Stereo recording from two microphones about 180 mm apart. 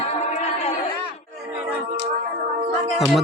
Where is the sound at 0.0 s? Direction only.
40° left (ahead or behind).